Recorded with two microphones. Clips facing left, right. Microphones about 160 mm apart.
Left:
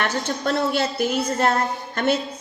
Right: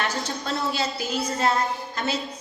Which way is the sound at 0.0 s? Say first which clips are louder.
Left 5 dB; 60° left (ahead or behind).